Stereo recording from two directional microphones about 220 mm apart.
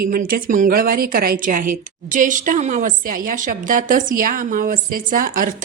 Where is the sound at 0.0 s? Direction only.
40° right (ahead or behind).